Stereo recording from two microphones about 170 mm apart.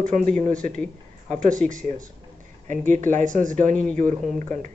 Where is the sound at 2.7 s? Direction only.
50° right (ahead or behind).